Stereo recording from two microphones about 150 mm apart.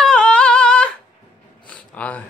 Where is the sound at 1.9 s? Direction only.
10° left (ahead or behind).